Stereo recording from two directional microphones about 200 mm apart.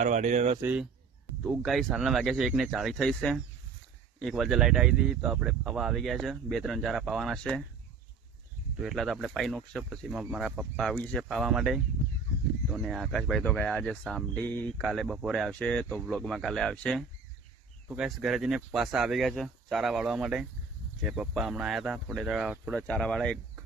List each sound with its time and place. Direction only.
0.0 s speech: 40° right (ahead or behind)
0.6 s speech: 5° right (ahead or behind)
8.8 s speech: centre (ahead or behind)